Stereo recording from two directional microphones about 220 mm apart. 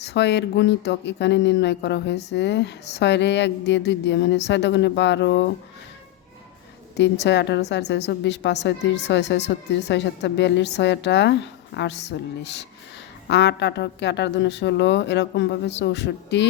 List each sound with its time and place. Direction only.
0.0 s a woman's voice: 50° left (ahead or behind)
6.9 s a woman's voice: 50° left (ahead or behind)